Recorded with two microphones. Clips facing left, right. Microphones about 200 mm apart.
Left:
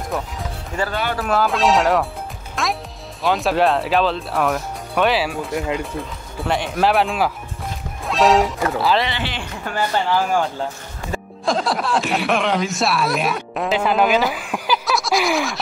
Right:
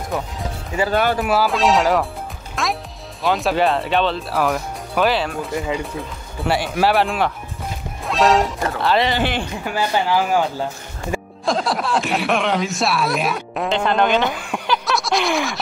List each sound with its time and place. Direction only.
0.1 s speech: centre (ahead or behind)
2.5 s music: centre (ahead or behind)
3.3 s speech: centre (ahead or behind)
9.0 s speech: 45° right (ahead or behind)
9.7 s speech: 10° right (ahead or behind)
11.4 s speech: centre (ahead or behind)